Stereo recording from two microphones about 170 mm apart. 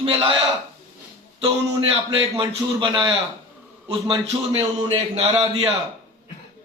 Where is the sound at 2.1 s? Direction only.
30° right (ahead or behind).